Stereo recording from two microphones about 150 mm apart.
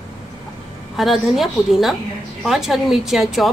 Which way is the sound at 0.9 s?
Centre (ahead or behind).